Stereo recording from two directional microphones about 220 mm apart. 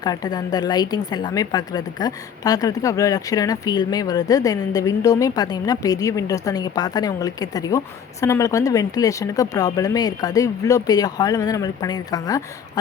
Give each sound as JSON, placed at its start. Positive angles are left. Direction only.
{"t": 0.0, "sound": "a woman's voice", "side_deg": 15}